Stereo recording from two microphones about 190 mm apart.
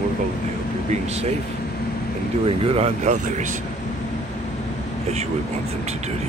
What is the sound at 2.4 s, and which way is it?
Speech, 30° right (ahead or behind).